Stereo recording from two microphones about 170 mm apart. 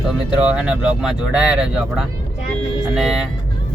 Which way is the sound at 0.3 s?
5° right (ahead or behind).